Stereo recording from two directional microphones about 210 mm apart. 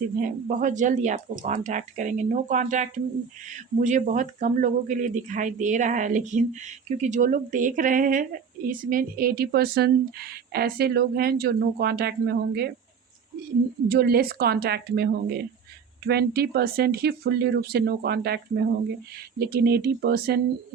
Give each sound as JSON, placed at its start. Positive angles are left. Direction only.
{"t": 0.3, "sound": "speech", "side_deg": -40}
{"t": 13.8, "sound": "speech", "side_deg": -45}